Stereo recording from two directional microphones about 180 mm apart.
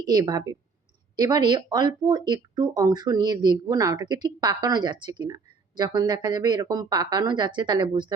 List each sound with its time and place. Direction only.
0.0 s speech: 20° right (ahead or behind)